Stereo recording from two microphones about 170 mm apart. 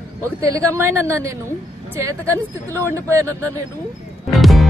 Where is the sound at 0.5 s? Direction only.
15° right (ahead or behind).